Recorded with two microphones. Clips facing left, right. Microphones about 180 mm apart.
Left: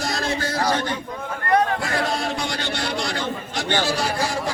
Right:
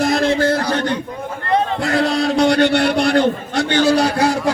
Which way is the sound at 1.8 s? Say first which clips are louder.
Right 7 dB; 70° right (ahead or behind).